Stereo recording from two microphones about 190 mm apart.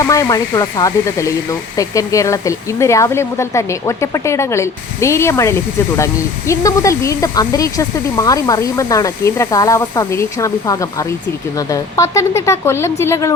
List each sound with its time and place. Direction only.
0.0 s speech: 15° left (ahead or behind)